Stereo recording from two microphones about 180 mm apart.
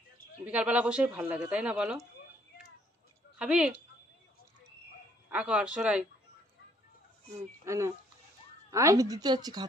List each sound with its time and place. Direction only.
0.4 s speech: 5° right (ahead or behind)
3.3 s speech: 5° right (ahead or behind)
5.3 s speech: 5° right (ahead or behind)
7.6 s a woman's voice: 15° right (ahead or behind)